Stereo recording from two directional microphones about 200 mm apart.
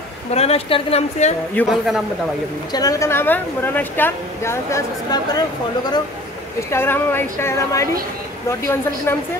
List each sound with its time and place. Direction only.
0.3 s speech: 30° left (ahead or behind)
1.5 s a man's voice: 5° left (ahead or behind)
2.7 s a woman's voice: 15° left (ahead or behind)
6.7 s a woman's voice: 10° left (ahead or behind)